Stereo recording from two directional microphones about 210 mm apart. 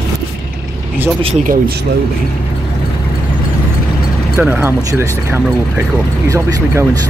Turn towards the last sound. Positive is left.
turn(degrees=-15)  # may be behind; listen again after turning